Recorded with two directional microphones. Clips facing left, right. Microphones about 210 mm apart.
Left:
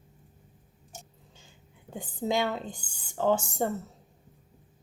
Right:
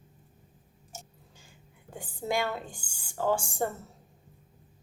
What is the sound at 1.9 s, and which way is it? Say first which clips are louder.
A woman's voice: left 2 dB; 20° left (ahead or behind).